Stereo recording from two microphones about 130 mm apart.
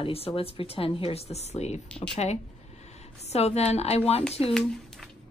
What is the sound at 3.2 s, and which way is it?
A woman's voice, 55° left (ahead or behind).